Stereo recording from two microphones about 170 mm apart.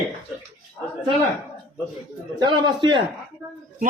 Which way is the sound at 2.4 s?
25° right (ahead or behind).